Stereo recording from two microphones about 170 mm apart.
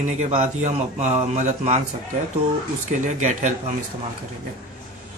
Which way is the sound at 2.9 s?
45° right (ahead or behind).